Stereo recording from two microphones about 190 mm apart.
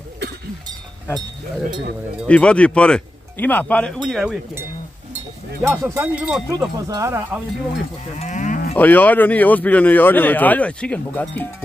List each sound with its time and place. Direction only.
2.2 s speech: 5° left (ahead or behind)
5.6 s speech: 10° right (ahead or behind)
6.9 s speech: 15° right (ahead or behind)
8.2 s cattle: 40° left (ahead or behind)
8.7 s a man's voice: 10° left (ahead or behind)